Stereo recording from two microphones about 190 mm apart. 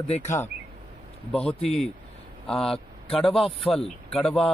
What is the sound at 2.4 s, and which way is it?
Speech, centre (ahead or behind).